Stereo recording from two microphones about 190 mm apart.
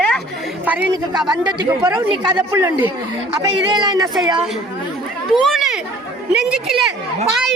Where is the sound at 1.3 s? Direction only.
25° right (ahead or behind).